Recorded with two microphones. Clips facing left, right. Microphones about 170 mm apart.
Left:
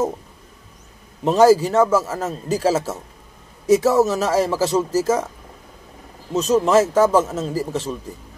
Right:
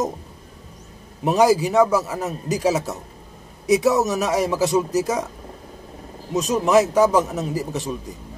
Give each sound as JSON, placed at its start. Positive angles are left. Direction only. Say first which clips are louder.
{"t": 1.2, "sound": "a man's voice", "louder": "left 3 dB", "side_deg": -15}
{"t": 6.3, "sound": "a man's voice", "louder": "left 2 dB", "side_deg": -15}